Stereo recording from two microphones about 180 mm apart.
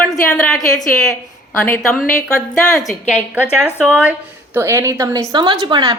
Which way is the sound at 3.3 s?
10° right (ahead or behind).